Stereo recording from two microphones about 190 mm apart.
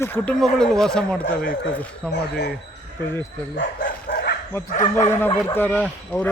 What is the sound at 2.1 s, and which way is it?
Speech, 60° left (ahead or behind).